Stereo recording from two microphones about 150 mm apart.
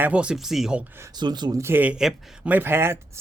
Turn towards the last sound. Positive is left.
turn(degrees=-15)  # may be behind; listen again after turning